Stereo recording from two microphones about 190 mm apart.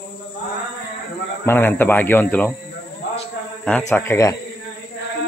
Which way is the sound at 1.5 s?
10° left (ahead or behind).